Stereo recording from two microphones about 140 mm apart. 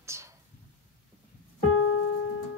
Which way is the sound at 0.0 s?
20° right (ahead or behind).